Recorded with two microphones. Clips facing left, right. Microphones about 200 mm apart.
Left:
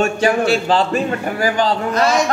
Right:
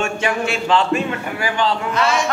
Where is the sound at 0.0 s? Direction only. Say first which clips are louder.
Left 5 dB; 35° left (ahead or behind).